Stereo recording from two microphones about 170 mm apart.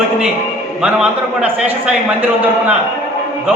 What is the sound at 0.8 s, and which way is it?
A man's voice, 5° right (ahead or behind).